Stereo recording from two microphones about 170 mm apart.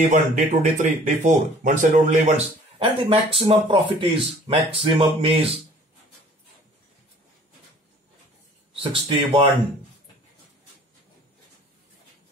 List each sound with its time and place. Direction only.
0.1 s speech: 45° right (ahead or behind)
2.8 s speech: 30° right (ahead or behind)
8.7 s speech: 30° right (ahead or behind)